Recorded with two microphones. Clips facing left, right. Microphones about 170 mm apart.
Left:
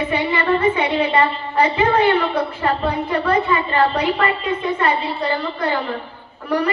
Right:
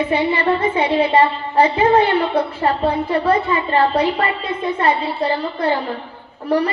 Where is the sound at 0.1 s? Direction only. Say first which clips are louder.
Right 1 dB; 30° right (ahead or behind).